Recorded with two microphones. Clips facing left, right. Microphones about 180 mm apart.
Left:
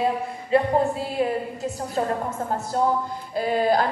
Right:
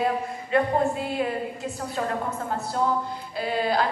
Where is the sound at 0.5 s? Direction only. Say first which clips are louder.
Left 2 dB; 30° left (ahead or behind).